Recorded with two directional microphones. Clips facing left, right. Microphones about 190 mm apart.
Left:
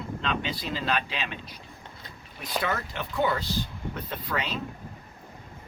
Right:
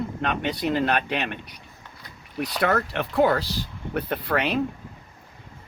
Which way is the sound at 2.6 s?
70° right (ahead or behind).